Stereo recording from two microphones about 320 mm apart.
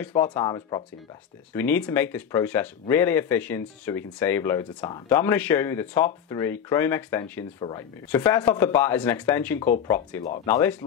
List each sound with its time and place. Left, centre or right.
0.0 s speech: centre